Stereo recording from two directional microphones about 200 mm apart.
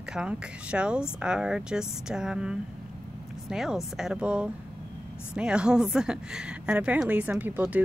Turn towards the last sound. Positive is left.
turn(degrees=-10)  # may be behind; listen again after turning